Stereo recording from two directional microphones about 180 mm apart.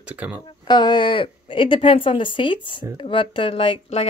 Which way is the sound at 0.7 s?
25° left (ahead or behind).